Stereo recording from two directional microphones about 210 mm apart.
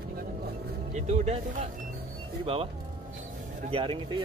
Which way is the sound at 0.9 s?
30° right (ahead or behind).